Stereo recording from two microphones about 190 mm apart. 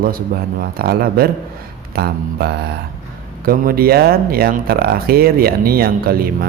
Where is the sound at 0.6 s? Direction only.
50° right (ahead or behind).